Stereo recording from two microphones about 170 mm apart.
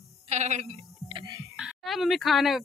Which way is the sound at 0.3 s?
45° right (ahead or behind).